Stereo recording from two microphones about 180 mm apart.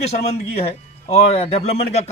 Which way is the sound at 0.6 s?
35° left (ahead or behind).